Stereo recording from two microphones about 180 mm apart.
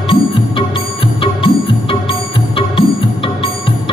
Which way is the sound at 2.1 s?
30° left (ahead or behind).